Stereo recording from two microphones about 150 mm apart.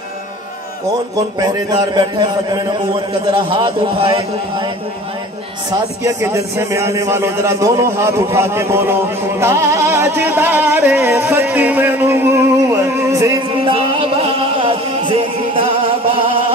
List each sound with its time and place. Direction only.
1.1 s a man's voice: 25° right (ahead or behind)
5.7 s a man's voice: 20° right (ahead or behind)
9.4 s music: 20° right (ahead or behind)
13.7 s music: 40° right (ahead or behind)